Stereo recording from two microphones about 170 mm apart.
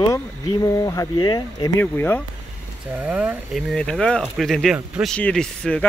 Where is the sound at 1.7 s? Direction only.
10° left (ahead or behind).